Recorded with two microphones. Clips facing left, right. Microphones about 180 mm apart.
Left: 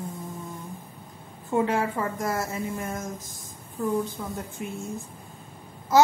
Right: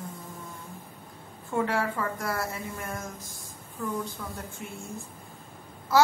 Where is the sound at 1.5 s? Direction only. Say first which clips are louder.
Left 3 dB; 20° left (ahead or behind).